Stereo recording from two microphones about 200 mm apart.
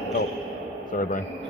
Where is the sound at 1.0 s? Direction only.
40° left (ahead or behind).